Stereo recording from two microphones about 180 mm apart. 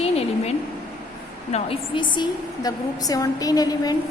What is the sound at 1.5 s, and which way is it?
A woman's voice, 35° left (ahead or behind).